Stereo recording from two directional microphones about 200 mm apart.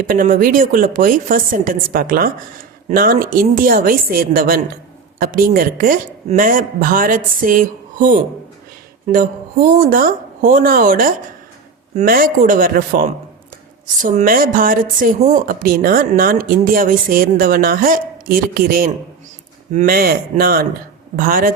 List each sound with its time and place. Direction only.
0.0 s speech: 45° right (ahead or behind)